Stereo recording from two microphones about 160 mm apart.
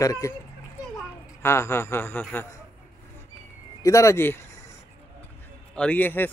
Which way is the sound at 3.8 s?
20° left (ahead or behind).